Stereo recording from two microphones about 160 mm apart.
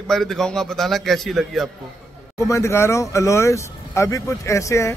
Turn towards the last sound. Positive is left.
turn(degrees=20)  # may be behind; listen again after turning